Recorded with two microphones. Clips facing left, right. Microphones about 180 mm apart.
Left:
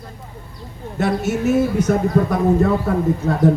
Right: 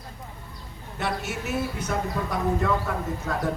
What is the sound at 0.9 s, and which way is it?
A man's voice, 45° left (ahead or behind).